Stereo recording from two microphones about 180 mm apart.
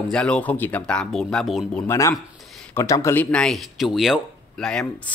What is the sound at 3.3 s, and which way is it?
Speech, 5° left (ahead or behind).